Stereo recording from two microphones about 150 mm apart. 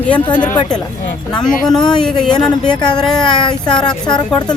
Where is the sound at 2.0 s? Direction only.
5° left (ahead or behind).